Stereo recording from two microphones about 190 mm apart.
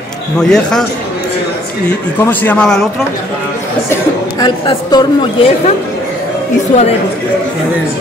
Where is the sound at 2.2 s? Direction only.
10° left (ahead or behind).